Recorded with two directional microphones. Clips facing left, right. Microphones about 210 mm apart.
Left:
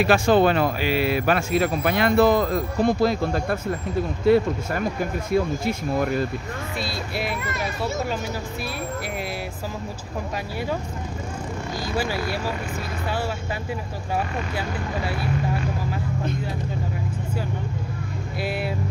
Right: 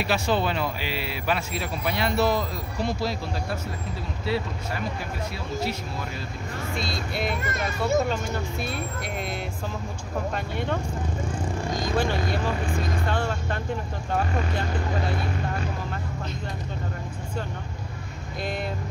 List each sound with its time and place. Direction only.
0.0 s speech: 50° left (ahead or behind)
5.3 s speech: 50° left (ahead or behind)
6.8 s speech: 5° left (ahead or behind)
11.8 s speech: 5° left (ahead or behind)